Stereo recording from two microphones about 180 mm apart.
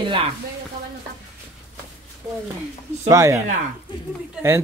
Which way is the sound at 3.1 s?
15° right (ahead or behind).